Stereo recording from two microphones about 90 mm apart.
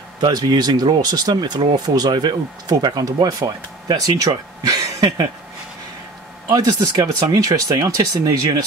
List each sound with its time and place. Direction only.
0.2 s speech: 50° right (ahead or behind)
6.5 s speech: 40° right (ahead or behind)